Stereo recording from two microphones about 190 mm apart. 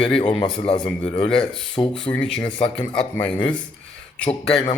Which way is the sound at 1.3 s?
5° left (ahead or behind).